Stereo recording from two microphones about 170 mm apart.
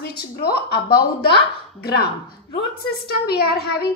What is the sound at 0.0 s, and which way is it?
Speech, 65° left (ahead or behind).